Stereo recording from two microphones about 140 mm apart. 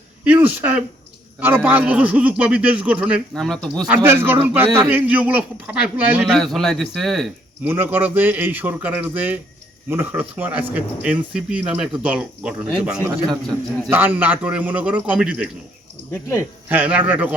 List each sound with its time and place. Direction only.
0.3 s speech: 15° right (ahead or behind)
3.3 s speech: 5° left (ahead or behind)
3.8 s speech: 15° right (ahead or behind); by 7.3 s centre (ahead or behind)
7.6 s speech: 15° right (ahead or behind)
16.6 s speech: 10° right (ahead or behind)